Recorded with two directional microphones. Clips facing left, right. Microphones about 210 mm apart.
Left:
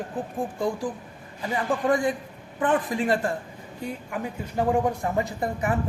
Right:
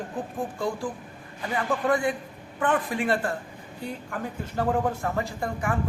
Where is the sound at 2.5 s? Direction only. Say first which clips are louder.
Left 2 dB; 25° left (ahead or behind).